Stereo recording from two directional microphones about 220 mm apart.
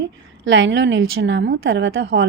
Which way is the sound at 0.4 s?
55° right (ahead or behind).